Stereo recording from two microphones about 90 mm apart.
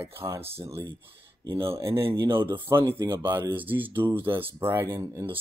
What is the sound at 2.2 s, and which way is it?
Speech, 25° right (ahead or behind).